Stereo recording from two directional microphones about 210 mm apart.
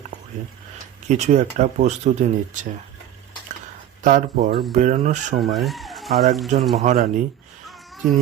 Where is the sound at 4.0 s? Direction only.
40° right (ahead or behind).